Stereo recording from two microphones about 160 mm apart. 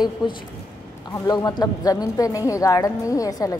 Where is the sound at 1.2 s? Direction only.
25° left (ahead or behind).